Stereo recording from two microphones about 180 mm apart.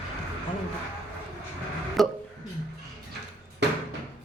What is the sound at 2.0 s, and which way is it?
Speech, centre (ahead or behind).